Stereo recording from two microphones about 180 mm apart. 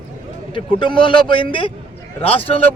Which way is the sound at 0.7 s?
25° left (ahead or behind).